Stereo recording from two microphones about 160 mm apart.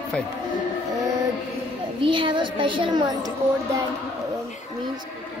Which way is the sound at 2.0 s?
30° right (ahead or behind).